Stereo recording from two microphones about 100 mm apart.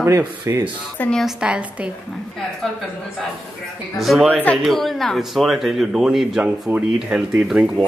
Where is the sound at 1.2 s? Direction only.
10° right (ahead or behind).